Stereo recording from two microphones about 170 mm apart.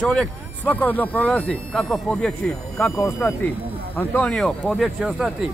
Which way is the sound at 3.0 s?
15° left (ahead or behind).